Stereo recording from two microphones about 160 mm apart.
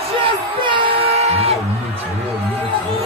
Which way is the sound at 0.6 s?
35° right (ahead or behind).